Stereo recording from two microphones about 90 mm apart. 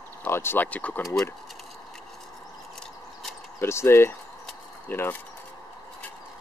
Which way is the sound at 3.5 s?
30° left (ahead or behind).